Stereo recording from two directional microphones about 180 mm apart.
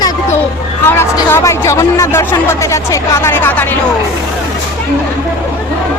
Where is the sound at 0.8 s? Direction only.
15° left (ahead or behind).